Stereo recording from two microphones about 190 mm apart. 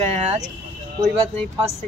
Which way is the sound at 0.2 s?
35° right (ahead or behind).